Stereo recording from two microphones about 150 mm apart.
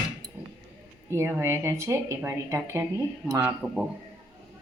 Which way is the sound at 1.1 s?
15° right (ahead or behind).